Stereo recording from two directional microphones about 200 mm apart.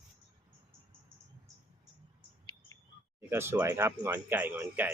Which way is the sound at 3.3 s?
10° right (ahead or behind).